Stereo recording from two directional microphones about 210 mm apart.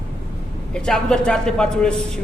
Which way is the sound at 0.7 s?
5° left (ahead or behind).